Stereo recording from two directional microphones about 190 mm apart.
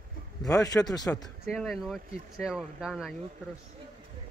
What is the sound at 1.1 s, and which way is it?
Speech, centre (ahead or behind).